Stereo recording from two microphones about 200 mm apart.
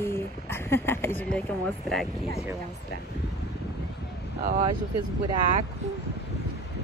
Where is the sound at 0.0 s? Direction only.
10° left (ahead or behind).